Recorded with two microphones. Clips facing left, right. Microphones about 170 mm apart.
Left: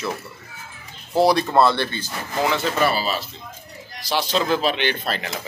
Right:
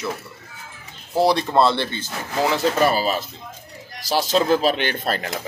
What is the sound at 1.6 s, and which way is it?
Speech, 25° right (ahead or behind).